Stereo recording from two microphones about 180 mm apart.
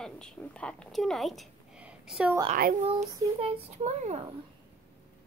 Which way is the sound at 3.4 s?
35° right (ahead or behind).